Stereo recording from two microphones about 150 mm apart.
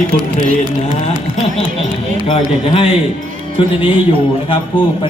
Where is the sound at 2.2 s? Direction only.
40° left (ahead or behind).